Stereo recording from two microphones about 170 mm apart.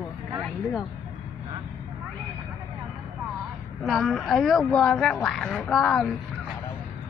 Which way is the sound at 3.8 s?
Centre (ahead or behind).